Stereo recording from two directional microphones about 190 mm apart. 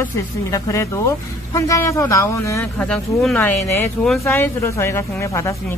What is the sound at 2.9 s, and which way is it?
A woman's voice, 5° left (ahead or behind).